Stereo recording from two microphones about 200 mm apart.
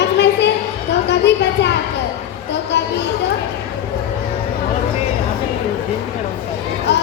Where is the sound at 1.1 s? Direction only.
60° left (ahead or behind).